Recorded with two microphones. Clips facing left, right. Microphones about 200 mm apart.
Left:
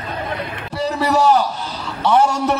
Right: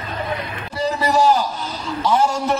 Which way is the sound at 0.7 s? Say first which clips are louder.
Left 1 dB; 65° left (ahead or behind).